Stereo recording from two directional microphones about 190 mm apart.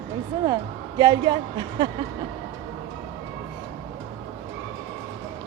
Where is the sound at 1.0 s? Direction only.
25° right (ahead or behind).